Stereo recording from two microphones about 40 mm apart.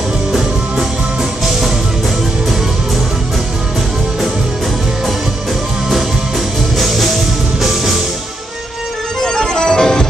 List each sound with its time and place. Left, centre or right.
0.3 s music: centre
6.8 s music: centre
9.2 s music: centre